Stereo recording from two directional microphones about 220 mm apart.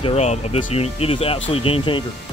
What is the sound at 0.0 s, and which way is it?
Speech, 30° left (ahead or behind).